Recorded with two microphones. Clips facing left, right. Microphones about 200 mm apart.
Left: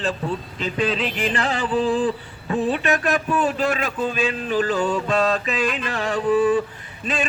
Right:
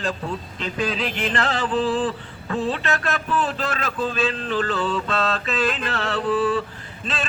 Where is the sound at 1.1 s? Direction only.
10° left (ahead or behind).